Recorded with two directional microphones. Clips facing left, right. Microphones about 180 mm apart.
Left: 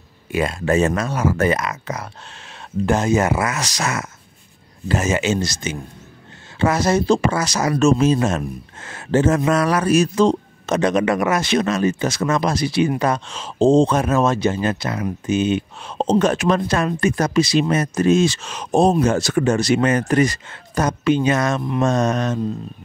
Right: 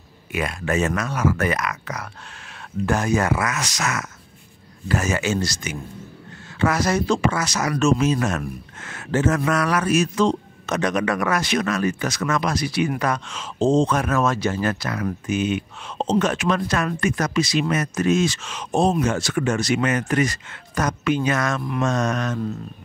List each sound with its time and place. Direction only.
0.3 s speech: 30° left (ahead or behind)
16.0 s speech: 40° left (ahead or behind)